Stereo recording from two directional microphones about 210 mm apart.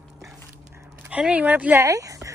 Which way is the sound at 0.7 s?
10° right (ahead or behind).